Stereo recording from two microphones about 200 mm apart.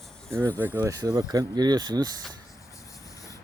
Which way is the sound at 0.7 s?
15° right (ahead or behind).